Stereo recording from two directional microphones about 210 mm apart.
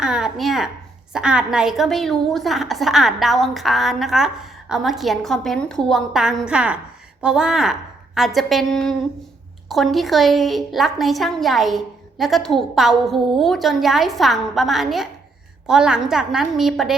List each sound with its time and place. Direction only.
0.0 s a woman's voice: 5° right (ahead or behind)